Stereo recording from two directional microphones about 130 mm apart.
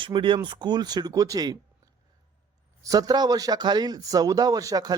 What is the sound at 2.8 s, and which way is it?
Speech, 25° right (ahead or behind).